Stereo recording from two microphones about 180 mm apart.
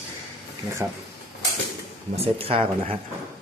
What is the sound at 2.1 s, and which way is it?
Speech, 35° right (ahead or behind).